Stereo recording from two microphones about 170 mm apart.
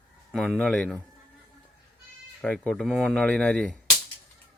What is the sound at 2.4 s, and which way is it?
Speech, 5° left (ahead or behind).